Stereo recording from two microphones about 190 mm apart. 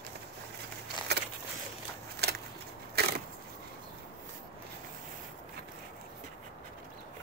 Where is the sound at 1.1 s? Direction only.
60° right (ahead or behind).